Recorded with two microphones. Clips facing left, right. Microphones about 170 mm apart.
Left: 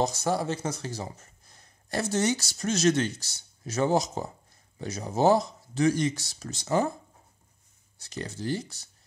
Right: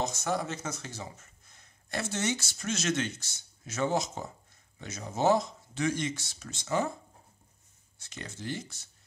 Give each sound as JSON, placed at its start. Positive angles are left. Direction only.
{"t": 0.0, "sound": "speech", "side_deg": 35}
{"t": 8.0, "sound": "speech", "side_deg": 35}